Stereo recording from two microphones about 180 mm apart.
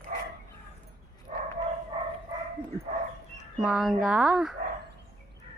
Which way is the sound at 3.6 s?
Centre (ahead or behind).